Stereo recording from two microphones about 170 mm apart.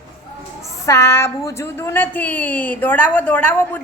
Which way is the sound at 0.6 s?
15° left (ahead or behind).